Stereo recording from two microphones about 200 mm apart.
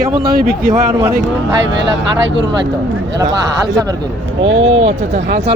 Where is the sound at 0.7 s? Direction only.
15° right (ahead or behind).